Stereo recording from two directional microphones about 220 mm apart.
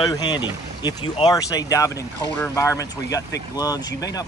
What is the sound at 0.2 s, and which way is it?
Speech, 20° left (ahead or behind).